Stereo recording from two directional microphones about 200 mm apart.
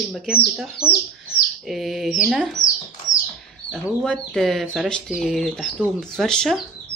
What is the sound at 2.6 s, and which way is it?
Bird, 40° left (ahead or behind).